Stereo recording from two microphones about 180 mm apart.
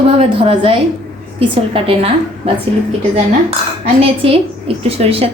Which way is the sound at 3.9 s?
30° right (ahead or behind).